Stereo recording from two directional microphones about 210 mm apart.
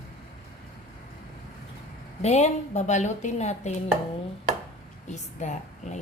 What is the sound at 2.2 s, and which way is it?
Speech, 35° left (ahead or behind).